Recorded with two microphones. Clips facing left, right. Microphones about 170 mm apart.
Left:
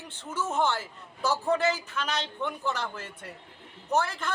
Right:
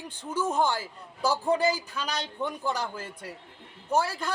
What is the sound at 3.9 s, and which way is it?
Speech, 10° right (ahead or behind).